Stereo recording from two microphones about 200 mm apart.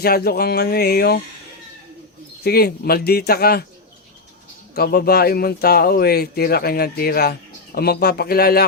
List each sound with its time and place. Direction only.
0.0 s speech: 50° left (ahead or behind)
2.4 s speech: 50° left (ahead or behind)
4.7 s speech: 50° left (ahead or behind)